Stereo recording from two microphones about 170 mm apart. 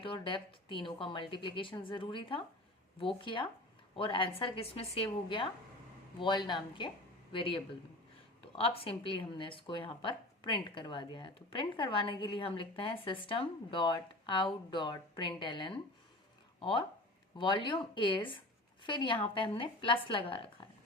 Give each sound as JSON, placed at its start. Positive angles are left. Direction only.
{"t": 0.0, "sound": "a woman's voice", "side_deg": 30}
{"t": 8.6, "sound": "a woman's voice", "side_deg": 35}